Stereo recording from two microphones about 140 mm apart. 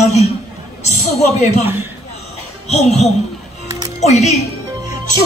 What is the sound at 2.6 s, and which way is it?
Speech, 50° left (ahead or behind).